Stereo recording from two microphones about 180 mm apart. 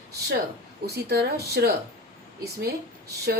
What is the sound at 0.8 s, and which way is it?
Speech, 65° right (ahead or behind).